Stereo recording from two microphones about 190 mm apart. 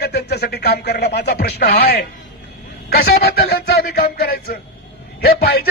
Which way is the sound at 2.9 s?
55° left (ahead or behind).